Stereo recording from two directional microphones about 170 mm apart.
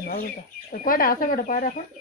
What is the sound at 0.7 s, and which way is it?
Speech, 55° left (ahead or behind).